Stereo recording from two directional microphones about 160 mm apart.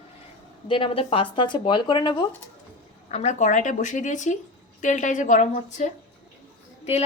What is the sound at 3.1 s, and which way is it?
Speech, 45° left (ahead or behind).